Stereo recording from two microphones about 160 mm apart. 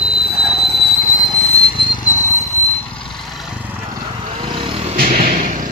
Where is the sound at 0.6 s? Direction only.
90° left.